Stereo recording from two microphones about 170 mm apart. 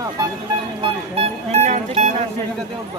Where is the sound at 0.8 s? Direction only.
35° right (ahead or behind).